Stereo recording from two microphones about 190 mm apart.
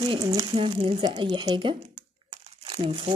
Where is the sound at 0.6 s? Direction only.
30° right (ahead or behind).